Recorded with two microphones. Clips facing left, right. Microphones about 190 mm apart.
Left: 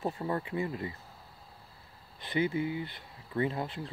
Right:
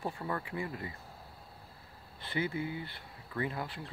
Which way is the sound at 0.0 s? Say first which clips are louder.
Left 4 dB; 25° left (ahead or behind).